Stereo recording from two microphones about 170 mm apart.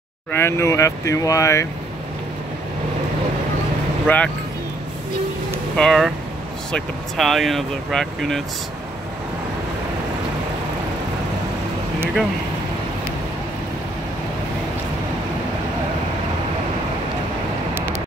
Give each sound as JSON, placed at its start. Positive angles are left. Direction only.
{"t": 0.3, "sound": "speech", "side_deg": 15}
{"t": 4.1, "sound": "speech", "side_deg": 10}
{"t": 5.8, "sound": "speech", "side_deg": 0}